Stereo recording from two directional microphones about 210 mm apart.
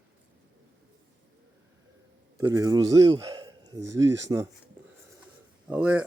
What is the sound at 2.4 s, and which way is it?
A man's voice, 15° right (ahead or behind).